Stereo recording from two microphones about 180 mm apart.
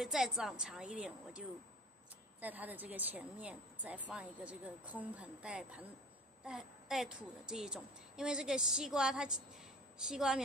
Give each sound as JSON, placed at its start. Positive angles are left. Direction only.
{"t": 0.0, "sound": "a woman's voice", "side_deg": 0}
{"t": 2.4, "sound": "a woman's voice", "side_deg": -10}